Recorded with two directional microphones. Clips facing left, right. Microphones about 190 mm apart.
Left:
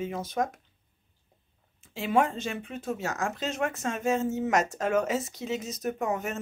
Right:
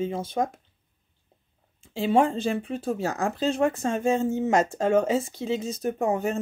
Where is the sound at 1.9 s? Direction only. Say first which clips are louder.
Right 4 dB; 30° right (ahead or behind).